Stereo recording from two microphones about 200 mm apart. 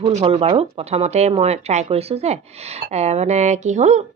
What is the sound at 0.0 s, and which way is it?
Speech, 30° right (ahead or behind).